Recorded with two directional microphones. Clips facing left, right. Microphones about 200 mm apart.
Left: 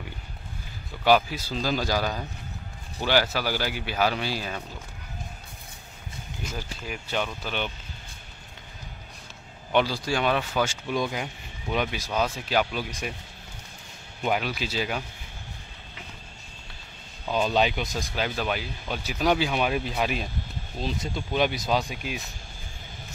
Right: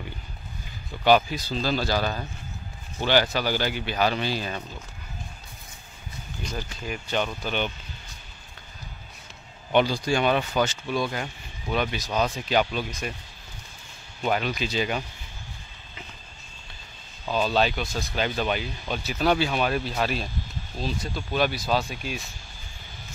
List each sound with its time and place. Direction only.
1.0 s speech: 5° left (ahead or behind)
6.4 s speech: 10° left (ahead or behind)
9.7 s speech: centre (ahead or behind)
10.6 s speech: 10° left (ahead or behind)
14.2 s speech: 5° left (ahead or behind)
17.3 s speech: 15° left (ahead or behind)